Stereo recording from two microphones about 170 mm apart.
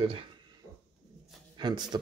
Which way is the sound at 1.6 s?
25° right (ahead or behind).